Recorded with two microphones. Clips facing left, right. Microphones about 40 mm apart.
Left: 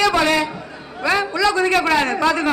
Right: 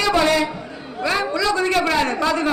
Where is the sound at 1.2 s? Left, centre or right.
Left.